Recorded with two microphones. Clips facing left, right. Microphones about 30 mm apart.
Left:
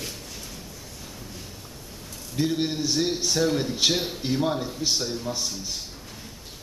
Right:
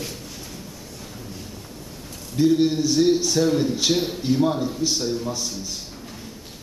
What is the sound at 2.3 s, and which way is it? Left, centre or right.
A man's voice, centre.